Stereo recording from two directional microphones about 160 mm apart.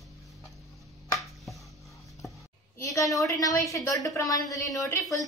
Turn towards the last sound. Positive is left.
turn(degrees=20)  # may be behind; listen again after turning